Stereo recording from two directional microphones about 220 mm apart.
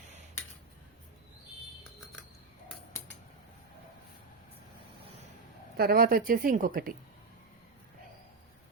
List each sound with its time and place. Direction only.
5.7 s speech: 45° right (ahead or behind)